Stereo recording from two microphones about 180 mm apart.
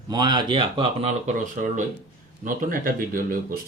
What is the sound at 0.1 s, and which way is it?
Speech, 25° right (ahead or behind).